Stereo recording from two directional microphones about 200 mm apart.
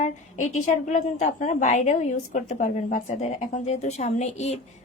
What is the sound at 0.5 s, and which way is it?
A woman's voice, 35° left (ahead or behind).